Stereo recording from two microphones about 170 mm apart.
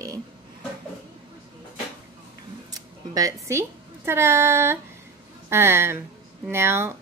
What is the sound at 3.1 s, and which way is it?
A woman's voice, 20° right (ahead or behind).